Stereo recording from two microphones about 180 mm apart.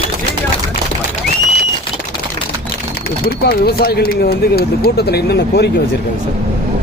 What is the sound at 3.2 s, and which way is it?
Speech, 60° left (ahead or behind).